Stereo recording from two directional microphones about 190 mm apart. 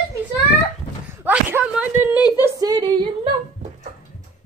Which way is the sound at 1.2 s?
5° right (ahead or behind).